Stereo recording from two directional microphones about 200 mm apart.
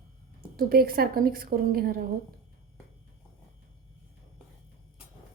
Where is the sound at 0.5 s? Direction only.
50° right (ahead or behind).